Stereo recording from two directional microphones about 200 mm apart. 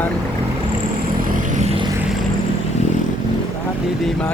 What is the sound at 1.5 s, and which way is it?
Vehicle, 30° right (ahead or behind).